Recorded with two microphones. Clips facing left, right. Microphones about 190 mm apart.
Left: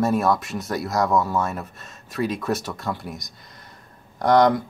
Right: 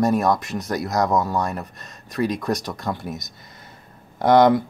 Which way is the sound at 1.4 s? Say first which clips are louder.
Right 1 dB; centre (ahead or behind).